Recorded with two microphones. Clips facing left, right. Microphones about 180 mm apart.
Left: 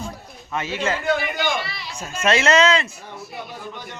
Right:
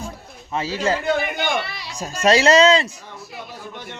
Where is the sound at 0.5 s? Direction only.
35° right (ahead or behind).